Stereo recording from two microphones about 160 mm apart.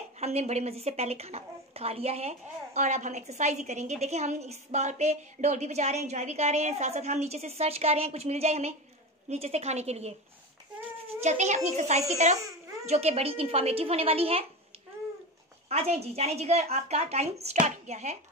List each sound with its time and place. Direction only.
0.2 s a woman's voice: 40° right (ahead or behind)
11.1 s a woman's voice: 45° right (ahead or behind)
15.7 s speech: 40° right (ahead or behind)